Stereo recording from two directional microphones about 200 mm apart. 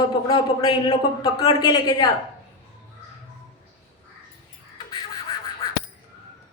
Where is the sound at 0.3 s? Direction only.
25° left (ahead or behind).